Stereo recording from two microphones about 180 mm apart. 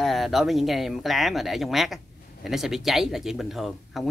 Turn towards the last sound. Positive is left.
turn(degrees=0)  # may be behind; listen again after turning